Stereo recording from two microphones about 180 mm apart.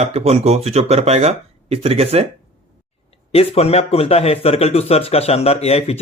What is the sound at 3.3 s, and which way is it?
Speech, 35° left (ahead or behind).